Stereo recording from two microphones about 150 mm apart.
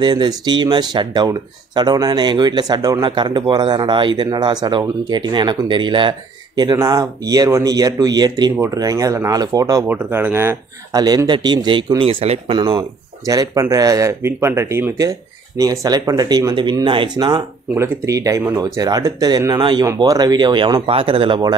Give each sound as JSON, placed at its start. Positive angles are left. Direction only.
{"t": 0.0, "sound": "speech", "side_deg": -30}